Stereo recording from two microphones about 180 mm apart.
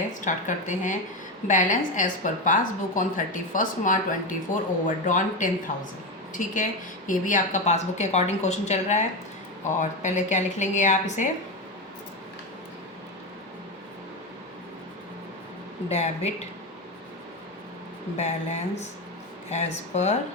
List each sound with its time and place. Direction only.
0.1 s a woman's voice: 45° left (ahead or behind)
15.9 s a woman's voice: 35° left (ahead or behind)
18.2 s a woman's voice: 40° left (ahead or behind)